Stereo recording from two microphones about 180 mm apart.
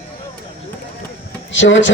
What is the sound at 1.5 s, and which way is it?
Speech, 90° left.